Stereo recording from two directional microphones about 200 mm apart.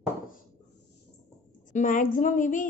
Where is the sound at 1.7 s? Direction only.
40° left (ahead or behind).